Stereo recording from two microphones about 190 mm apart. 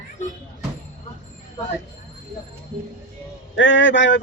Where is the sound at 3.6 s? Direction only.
80° left.